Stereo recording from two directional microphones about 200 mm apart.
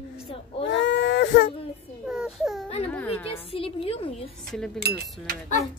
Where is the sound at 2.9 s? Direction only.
10° left (ahead or behind).